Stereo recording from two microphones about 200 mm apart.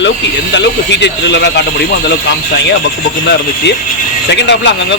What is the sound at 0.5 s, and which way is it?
A man's voice, 60° left (ahead or behind).